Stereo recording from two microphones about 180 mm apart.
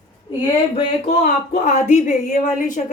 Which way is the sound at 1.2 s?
45° left (ahead or behind).